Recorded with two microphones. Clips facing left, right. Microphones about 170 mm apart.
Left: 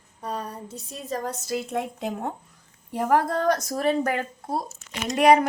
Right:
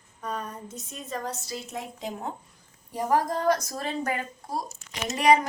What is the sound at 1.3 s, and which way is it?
Speech, 55° left (ahead or behind).